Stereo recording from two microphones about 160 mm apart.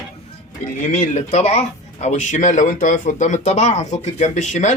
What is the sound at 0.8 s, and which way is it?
Speech, 50° left (ahead or behind).